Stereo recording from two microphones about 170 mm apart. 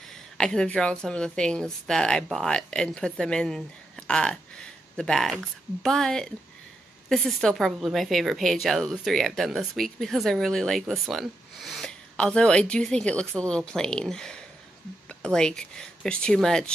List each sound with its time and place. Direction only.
0.1 s a woman's voice: 5° left (ahead or behind)